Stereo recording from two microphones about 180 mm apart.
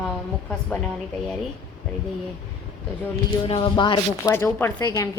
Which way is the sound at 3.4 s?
30° left (ahead or behind).